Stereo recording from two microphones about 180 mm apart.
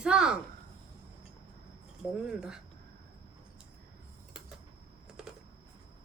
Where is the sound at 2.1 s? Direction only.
5° right (ahead or behind).